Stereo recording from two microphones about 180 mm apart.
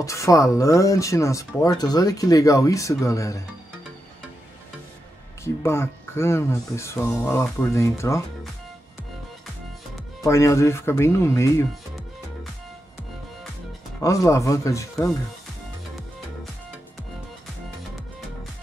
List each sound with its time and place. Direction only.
0.0 s speech: 15° left (ahead or behind)
5.4 s speech: 15° left (ahead or behind)
10.2 s speech: 15° left (ahead or behind)
13.9 s speech: 15° left (ahead or behind)